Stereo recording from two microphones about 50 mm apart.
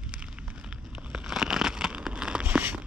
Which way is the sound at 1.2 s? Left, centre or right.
Centre.